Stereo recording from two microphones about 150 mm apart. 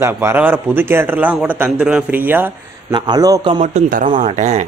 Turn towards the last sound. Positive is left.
turn(degrees=-50)  # may be behind; listen again after turning